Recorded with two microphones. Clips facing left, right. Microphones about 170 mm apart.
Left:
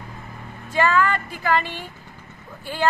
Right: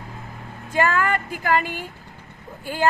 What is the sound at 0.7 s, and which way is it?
Speech, 50° right (ahead or behind).